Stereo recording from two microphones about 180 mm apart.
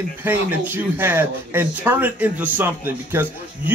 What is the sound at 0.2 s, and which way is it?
Speech, 10° right (ahead or behind).